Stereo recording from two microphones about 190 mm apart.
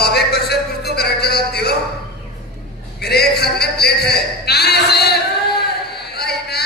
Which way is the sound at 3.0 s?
55° left (ahead or behind).